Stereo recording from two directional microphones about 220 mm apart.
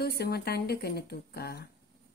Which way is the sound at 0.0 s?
45° left (ahead or behind).